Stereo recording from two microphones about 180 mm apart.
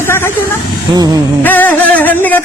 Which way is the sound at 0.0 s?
15° left (ahead or behind).